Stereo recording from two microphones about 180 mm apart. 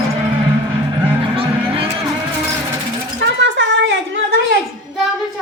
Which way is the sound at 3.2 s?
90° right.